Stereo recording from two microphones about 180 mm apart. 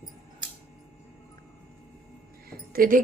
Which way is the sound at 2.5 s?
50° right (ahead or behind).